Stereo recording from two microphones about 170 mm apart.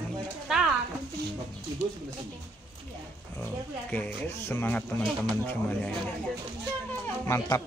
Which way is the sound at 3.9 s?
10° left (ahead or behind).